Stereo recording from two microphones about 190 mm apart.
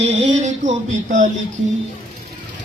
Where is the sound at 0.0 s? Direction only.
40° right (ahead or behind).